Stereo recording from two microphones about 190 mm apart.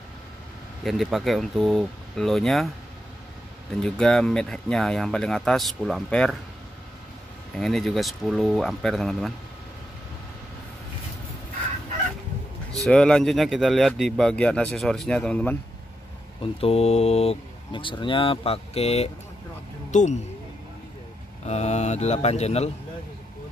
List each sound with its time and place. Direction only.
0.8 s speech: centre (ahead or behind)
3.8 s speech: 5° left (ahead or behind)
7.5 s speech: centre (ahead or behind)
12.7 s speech: 5° left (ahead or behind)
16.5 s speech: 30° left (ahead or behind)
21.5 s speech: 35° left (ahead or behind)